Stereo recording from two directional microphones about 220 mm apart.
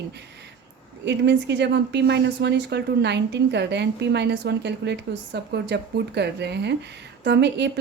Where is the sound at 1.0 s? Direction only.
50° right (ahead or behind).